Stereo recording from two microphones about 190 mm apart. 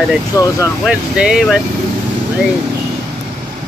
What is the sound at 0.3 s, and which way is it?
Speech, 15° left (ahead or behind).